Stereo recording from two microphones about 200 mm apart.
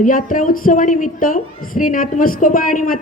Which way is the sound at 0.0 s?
45° left (ahead or behind).